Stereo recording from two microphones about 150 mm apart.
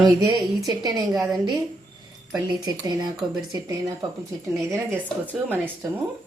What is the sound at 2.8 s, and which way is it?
Speech, 30° right (ahead or behind).